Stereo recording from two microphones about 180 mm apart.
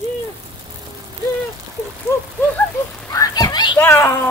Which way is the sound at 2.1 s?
15° left (ahead or behind).